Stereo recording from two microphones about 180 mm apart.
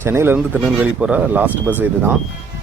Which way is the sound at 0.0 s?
15° right (ahead or behind).